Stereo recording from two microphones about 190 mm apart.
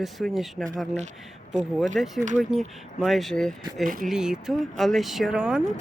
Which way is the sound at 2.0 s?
Centre (ahead or behind).